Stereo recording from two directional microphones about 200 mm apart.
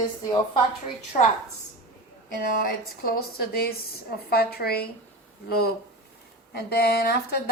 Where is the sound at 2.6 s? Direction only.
50° left (ahead or behind).